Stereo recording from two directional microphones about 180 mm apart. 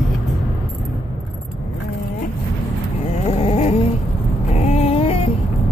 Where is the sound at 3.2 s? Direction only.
35° left (ahead or behind).